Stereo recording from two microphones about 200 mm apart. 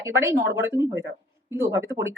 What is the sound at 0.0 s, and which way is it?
Speech, 15° right (ahead or behind).